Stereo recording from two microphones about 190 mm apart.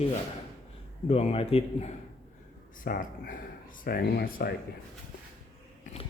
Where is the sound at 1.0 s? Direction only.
35° left (ahead or behind).